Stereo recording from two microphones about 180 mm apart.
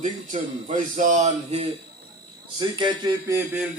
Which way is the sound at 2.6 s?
25° right (ahead or behind).